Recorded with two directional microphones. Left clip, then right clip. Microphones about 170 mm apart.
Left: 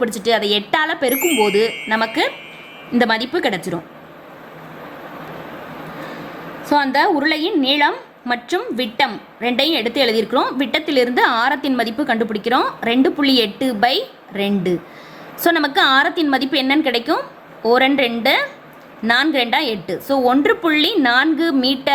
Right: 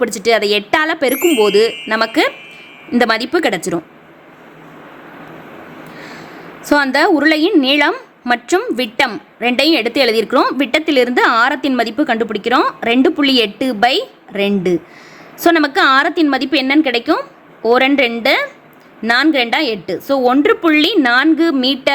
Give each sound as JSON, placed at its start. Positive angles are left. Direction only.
{"t": 0.0, "sound": "a woman's voice", "side_deg": -45}
{"t": 6.7, "sound": "a woman's voice", "side_deg": -55}